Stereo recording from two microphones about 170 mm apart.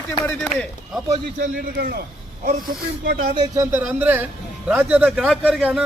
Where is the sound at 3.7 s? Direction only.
10° right (ahead or behind).